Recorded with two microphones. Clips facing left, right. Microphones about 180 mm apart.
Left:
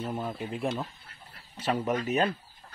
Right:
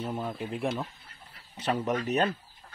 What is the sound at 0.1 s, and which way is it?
Speech, 5° left (ahead or behind).